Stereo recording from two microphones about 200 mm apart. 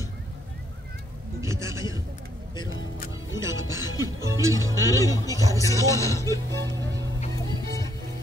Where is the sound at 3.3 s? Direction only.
15° right (ahead or behind).